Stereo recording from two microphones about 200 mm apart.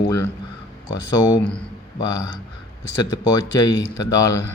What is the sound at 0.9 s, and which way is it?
A man's voice, 15° left (ahead or behind).